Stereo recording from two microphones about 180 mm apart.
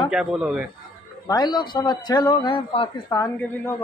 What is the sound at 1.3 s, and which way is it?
A man's voice, 20° left (ahead or behind).